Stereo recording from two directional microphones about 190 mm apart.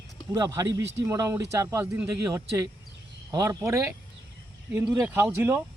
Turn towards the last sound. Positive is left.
turn(degrees=-10)  # may be behind; listen again after turning